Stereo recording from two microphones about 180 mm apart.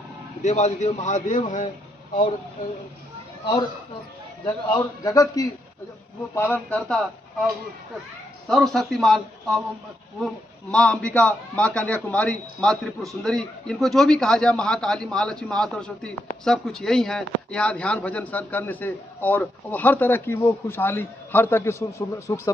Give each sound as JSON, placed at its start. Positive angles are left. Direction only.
{"t": 0.4, "sound": "a man's voice", "side_deg": 40}
{"t": 4.6, "sound": "a man's voice", "side_deg": 20}
{"t": 8.5, "sound": "a man's voice", "side_deg": 0}